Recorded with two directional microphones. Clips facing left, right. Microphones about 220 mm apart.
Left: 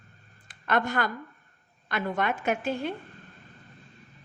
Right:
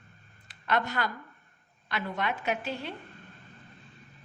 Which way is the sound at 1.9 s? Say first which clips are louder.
Left 4 dB; 50° left (ahead or behind).